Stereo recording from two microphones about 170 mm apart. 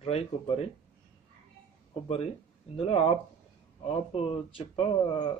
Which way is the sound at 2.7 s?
35° left (ahead or behind).